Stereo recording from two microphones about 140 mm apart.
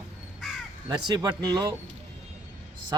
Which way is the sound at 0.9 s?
30° right (ahead or behind).